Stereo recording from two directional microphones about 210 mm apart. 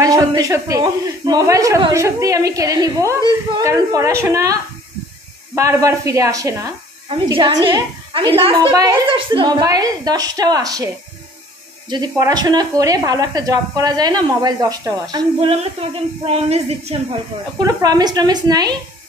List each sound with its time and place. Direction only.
0.0 s a woman's voice: 15° right (ahead or behind)
11.9 s speech: 20° right (ahead or behind)
17.6 s speech: 20° right (ahead or behind)